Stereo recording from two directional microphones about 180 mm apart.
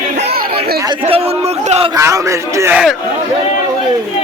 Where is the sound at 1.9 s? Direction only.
15° right (ahead or behind).